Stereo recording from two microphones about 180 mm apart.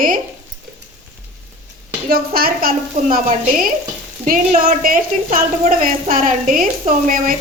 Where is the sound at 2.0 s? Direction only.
55° right (ahead or behind).